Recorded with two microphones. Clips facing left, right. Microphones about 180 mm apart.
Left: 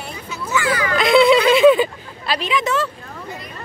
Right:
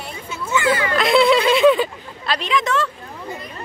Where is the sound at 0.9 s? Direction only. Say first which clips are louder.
Left 3 dB; centre (ahead or behind).